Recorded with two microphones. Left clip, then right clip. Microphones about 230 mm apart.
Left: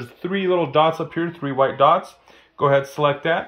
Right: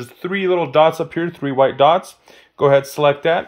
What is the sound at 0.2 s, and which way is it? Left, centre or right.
Speech, centre.